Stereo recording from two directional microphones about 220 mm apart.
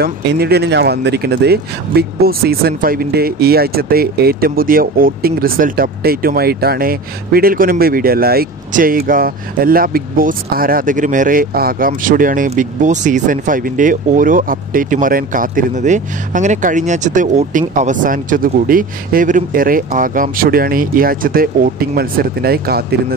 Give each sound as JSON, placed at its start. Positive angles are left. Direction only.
{"t": 0.0, "sound": "speech", "side_deg": -45}